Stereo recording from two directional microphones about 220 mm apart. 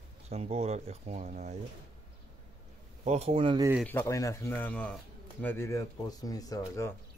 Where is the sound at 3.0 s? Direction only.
30° right (ahead or behind).